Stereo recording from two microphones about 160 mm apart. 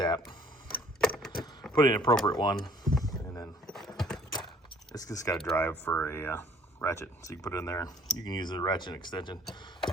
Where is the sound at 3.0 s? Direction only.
20° left (ahead or behind).